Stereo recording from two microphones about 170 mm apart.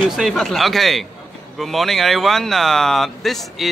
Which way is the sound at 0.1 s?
Centre (ahead or behind).